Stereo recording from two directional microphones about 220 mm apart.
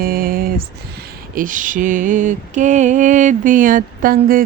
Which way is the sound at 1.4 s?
35° right (ahead or behind).